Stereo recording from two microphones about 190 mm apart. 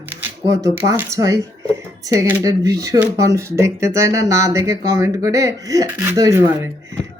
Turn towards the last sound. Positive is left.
turn(degrees=-15)  # may be behind; listen again after turning